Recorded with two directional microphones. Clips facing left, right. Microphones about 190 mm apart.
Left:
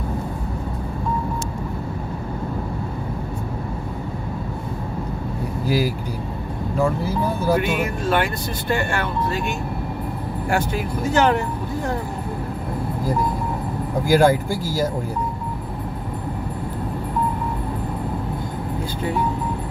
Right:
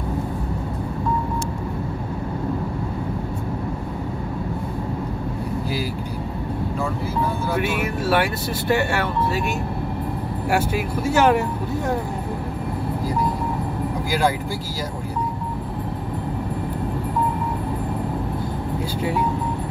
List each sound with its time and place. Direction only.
7.6 s speech: 5° right (ahead or behind)
10.5 s speech: 10° right (ahead or behind)
14.0 s speech: 50° left (ahead or behind)